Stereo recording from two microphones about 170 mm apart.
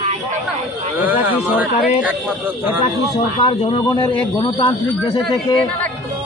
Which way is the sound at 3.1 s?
30° left (ahead or behind).